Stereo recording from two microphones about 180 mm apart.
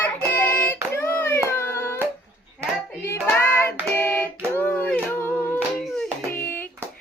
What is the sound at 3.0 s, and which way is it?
Hands, 15° left (ahead or behind).